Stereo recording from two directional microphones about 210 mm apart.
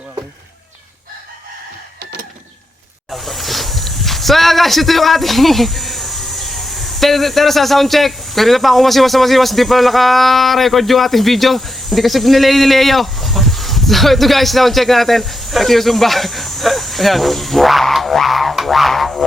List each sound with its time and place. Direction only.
3.1 s speech: centre (ahead or behind)